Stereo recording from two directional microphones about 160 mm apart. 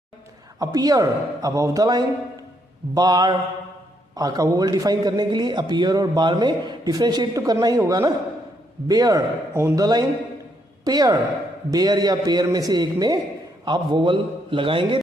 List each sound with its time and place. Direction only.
0.6 s a man's voice: 25° right (ahead or behind)